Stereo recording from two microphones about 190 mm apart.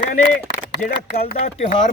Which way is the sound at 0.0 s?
45° left (ahead or behind).